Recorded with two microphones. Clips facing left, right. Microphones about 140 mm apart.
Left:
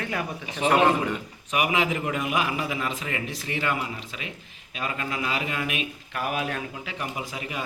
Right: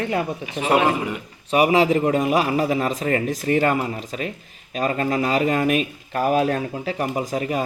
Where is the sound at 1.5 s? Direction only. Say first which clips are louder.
Right 8 dB; 35° right (ahead or behind).